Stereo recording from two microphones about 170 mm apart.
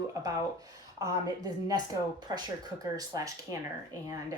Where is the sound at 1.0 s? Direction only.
20° right (ahead or behind).